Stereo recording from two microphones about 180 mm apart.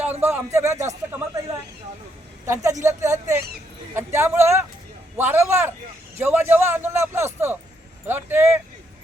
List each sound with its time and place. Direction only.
0.0 s a man's voice: 10° right (ahead or behind)
2.8 s a man's voice: 15° right (ahead or behind)